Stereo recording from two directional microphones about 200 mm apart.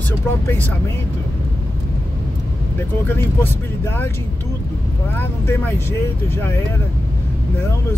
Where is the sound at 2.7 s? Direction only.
10° left (ahead or behind).